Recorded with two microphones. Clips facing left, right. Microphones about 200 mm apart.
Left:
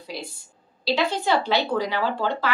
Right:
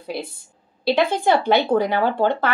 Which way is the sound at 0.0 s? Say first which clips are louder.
Right 6 dB; 55° right (ahead or behind).